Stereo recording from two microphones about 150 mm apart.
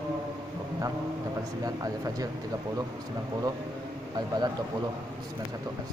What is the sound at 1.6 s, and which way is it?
Speech, 25° right (ahead or behind).